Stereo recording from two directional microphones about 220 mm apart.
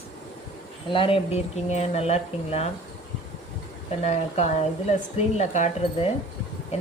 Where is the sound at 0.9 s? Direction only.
25° left (ahead or behind).